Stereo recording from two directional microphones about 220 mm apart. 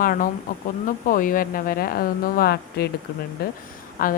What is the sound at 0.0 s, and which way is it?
A woman's voice, 40° left (ahead or behind).